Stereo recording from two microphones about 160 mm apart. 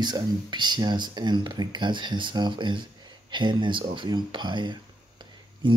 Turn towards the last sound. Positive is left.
turn(degrees=-30)  # may be behind; listen again after turning